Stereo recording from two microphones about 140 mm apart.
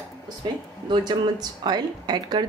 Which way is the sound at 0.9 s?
30° right (ahead or behind).